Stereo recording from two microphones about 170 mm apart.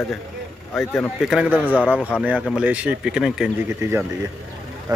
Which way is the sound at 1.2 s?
5° right (ahead or behind).